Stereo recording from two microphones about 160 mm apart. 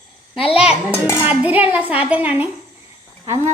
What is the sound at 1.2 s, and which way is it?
A woman's voice, 10° right (ahead or behind).